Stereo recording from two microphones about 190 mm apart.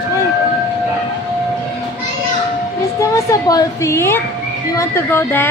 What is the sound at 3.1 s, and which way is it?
A woman's voice, 20° left (ahead or behind).